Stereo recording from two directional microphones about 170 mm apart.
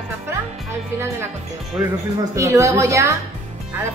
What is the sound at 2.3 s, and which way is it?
Music, 15° right (ahead or behind).